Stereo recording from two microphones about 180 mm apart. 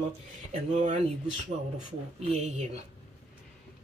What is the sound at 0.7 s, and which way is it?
Speech, 40° right (ahead or behind).